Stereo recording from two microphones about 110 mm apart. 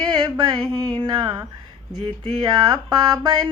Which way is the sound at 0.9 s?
45° right (ahead or behind).